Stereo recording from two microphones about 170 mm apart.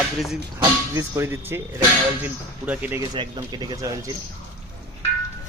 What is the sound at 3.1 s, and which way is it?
Speech, 25° right (ahead or behind).